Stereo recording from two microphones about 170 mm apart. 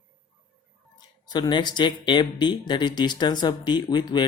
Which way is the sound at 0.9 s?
25° left (ahead or behind).